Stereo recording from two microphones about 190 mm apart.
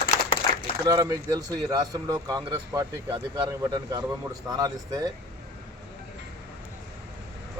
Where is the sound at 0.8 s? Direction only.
20° right (ahead or behind).